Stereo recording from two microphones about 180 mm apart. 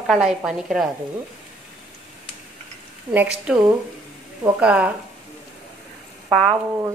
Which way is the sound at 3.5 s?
5° right (ahead or behind).